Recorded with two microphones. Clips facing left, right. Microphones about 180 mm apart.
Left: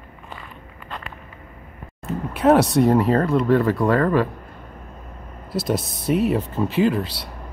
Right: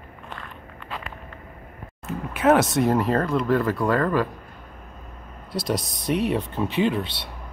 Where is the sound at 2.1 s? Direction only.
35° left (ahead or behind).